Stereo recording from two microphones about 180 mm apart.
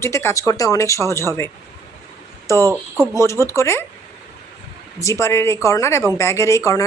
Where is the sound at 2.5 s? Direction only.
15° left (ahead or behind).